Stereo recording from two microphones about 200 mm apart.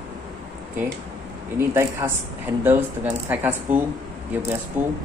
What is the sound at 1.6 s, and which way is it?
Speech, 15° right (ahead or behind).